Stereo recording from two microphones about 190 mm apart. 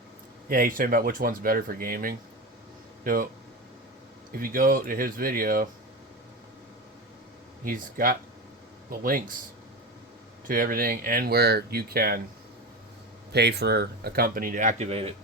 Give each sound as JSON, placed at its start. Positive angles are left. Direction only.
{"t": 0.4, "sound": "speech", "side_deg": -50}
{"t": 4.3, "sound": "speech", "side_deg": -50}
{"t": 7.6, "sound": "speech", "side_deg": -50}
{"t": 10.5, "sound": "speech", "side_deg": -50}
{"t": 13.3, "sound": "speech", "side_deg": -60}